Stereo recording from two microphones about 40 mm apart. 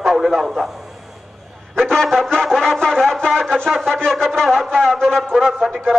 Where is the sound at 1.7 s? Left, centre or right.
Centre.